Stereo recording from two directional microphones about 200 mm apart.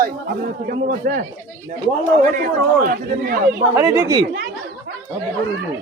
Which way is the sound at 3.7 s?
15° right (ahead or behind).